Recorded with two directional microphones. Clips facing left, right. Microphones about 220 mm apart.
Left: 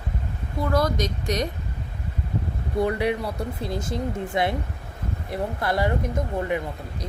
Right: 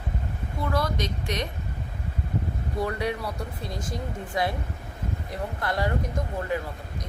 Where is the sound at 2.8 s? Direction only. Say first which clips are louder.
Left 5 dB; 25° left (ahead or behind).